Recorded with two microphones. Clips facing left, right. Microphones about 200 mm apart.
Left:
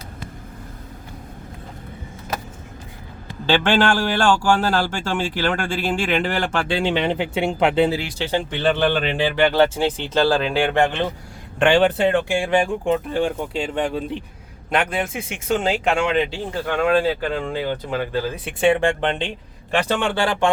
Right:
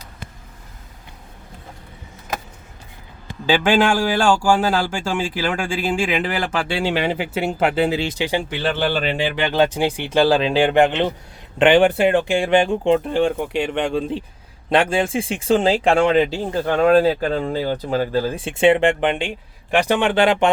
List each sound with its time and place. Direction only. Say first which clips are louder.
3.4 s a man's voice: right 1 dB; 10° right (ahead or behind)
7.9 s speech: right 2 dB; 25° right (ahead or behind)
8.2 s a man's voice: even; 10° right (ahead or behind); by 18.5 s 35° right (ahead or behind)
18.6 s a man's voice: right 3 dB; 20° right (ahead or behind)